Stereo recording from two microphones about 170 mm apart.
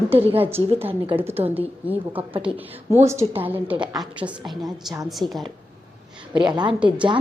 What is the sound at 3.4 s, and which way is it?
Speech, 10° right (ahead or behind).